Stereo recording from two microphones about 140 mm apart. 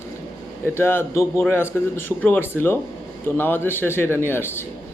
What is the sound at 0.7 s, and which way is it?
A man's voice, 15° left (ahead or behind).